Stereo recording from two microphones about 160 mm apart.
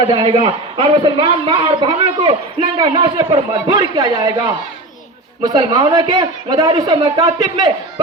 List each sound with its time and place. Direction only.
0.2 s a man's voice: 35° right (ahead or behind)
5.5 s a man's voice: 25° right (ahead or behind)